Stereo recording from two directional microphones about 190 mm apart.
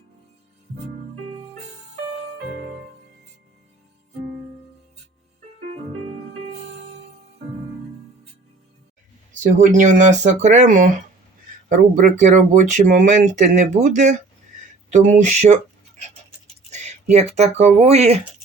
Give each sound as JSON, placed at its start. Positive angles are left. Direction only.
{"t": 9.3, "sound": "speech", "side_deg": -40}
{"t": 16.6, "sound": "speech", "side_deg": -35}